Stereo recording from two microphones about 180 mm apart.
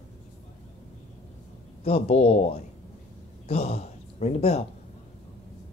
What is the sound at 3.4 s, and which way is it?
A man's voice, 40° left (ahead or behind).